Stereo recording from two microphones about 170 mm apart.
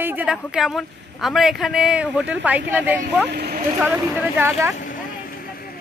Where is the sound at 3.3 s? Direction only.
65° right (ahead or behind).